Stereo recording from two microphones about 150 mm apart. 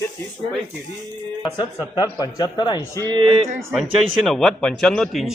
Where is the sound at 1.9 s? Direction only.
25° left (ahead or behind).